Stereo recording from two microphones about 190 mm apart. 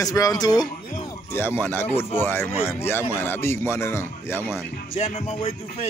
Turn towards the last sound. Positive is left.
turn(degrees=35)  # may be behind; listen again after turning